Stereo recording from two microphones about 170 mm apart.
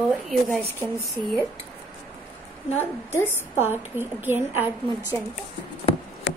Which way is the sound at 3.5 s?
10° right (ahead or behind).